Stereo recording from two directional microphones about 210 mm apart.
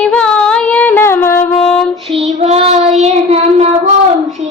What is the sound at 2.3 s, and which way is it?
Child singing, 30° right (ahead or behind).